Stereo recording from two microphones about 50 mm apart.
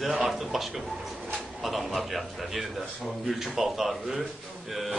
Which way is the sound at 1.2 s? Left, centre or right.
Centre.